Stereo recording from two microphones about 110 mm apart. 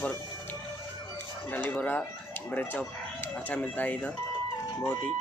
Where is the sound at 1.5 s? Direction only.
15° left (ahead or behind).